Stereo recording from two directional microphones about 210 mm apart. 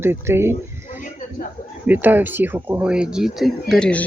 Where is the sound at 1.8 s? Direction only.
10° right (ahead or behind).